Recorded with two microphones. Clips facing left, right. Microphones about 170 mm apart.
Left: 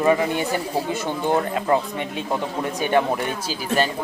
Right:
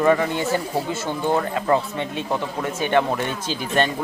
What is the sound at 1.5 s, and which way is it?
Speech, 20° left (ahead or behind).